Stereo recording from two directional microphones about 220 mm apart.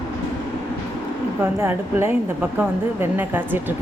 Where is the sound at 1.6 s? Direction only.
10° right (ahead or behind).